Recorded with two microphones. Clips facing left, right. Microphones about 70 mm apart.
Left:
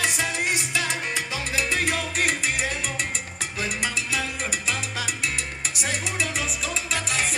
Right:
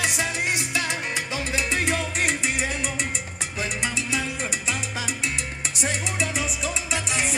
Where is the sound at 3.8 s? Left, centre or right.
Centre.